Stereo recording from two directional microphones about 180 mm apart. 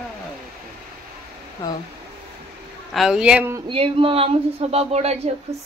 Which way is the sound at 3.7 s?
30° right (ahead or behind).